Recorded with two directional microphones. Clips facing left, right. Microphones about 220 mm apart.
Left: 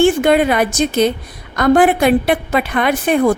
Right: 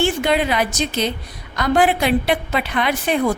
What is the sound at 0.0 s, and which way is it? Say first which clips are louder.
A woman's voice: left 7 dB; 50° left (ahead or behind).